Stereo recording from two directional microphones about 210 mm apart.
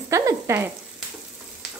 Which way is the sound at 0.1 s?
15° right (ahead or behind).